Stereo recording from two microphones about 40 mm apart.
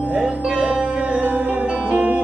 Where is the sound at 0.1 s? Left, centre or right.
Right.